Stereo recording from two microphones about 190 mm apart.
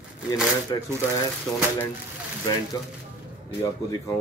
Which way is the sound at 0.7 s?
20° left (ahead or behind).